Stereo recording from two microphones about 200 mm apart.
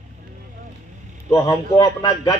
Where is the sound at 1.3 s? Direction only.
15° left (ahead or behind).